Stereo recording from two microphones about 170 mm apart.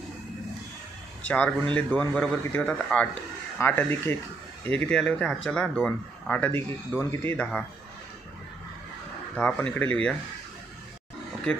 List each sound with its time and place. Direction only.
1.2 s speech: 10° left (ahead or behind)
9.4 s speech: 5° left (ahead or behind)